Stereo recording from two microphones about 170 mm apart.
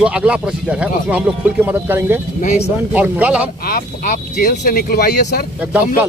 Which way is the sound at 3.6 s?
65° left (ahead or behind).